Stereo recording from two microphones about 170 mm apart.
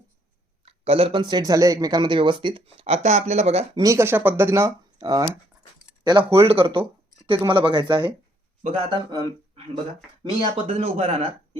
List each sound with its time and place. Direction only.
0.6 s speech: 35° right (ahead or behind)
3.8 s speech: 20° right (ahead or behind)
6.4 s speech: 35° right (ahead or behind)
10.4 s speech: 30° right (ahead or behind)